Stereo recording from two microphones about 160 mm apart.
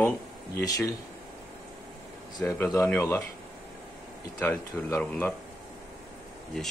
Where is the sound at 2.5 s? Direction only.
20° left (ahead or behind).